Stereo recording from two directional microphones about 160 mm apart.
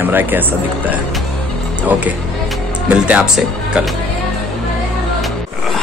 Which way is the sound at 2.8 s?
10° right (ahead or behind).